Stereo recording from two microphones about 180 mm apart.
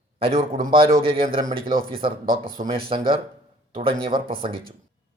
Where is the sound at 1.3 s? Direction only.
30° right (ahead or behind).